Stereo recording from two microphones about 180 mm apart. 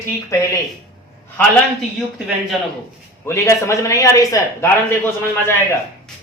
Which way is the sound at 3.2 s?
15° left (ahead or behind).